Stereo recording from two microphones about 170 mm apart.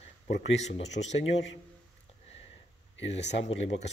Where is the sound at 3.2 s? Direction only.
90° left.